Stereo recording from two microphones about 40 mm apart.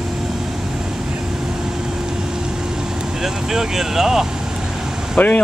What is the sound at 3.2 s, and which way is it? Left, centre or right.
Speech, centre.